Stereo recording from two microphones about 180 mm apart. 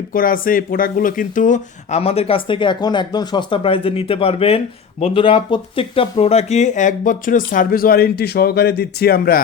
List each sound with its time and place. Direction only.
0.1 s speech: 50° left (ahead or behind)